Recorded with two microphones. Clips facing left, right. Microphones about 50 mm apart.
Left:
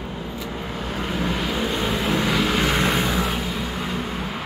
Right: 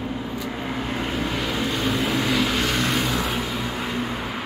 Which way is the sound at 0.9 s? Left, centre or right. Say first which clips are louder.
Left 3 dB; centre.